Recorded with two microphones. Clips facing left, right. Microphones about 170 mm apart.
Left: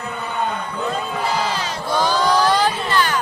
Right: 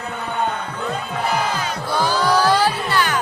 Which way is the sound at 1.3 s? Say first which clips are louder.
Right 2 dB; 30° left (ahead or behind).